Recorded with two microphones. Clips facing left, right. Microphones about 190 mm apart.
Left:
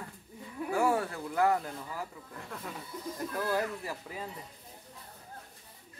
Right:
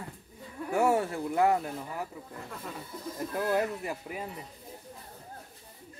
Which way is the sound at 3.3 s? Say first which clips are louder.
Right 4 dB; 20° right (ahead or behind).